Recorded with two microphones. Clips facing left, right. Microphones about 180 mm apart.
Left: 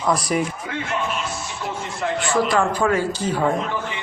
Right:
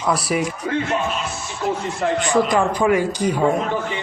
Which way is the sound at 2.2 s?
15° right (ahead or behind).